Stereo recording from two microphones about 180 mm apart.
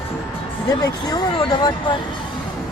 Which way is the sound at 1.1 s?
20° left (ahead or behind).